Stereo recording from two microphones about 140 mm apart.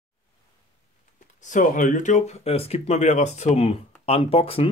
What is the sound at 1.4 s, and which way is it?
Speech, 65° left (ahead or behind).